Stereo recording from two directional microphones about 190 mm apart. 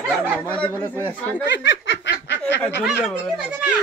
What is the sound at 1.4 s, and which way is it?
Snicker, 70° left (ahead or behind).